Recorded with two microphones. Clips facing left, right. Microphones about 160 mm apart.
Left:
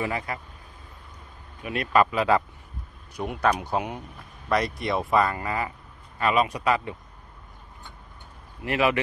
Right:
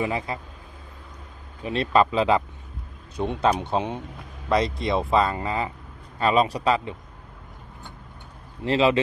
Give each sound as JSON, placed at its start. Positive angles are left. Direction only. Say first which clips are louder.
{"t": 0.0, "sound": "speech", "louder": "right 2 dB", "side_deg": -25}
{"t": 1.6, "sound": "speech", "louder": "right 2 dB", "side_deg": -25}
{"t": 8.6, "sound": "speech", "louder": "right 4 dB", "side_deg": -25}